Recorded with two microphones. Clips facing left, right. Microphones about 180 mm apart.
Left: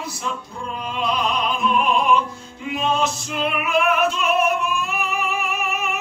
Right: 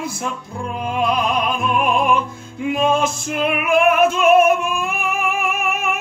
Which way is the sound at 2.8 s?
50° right (ahead or behind).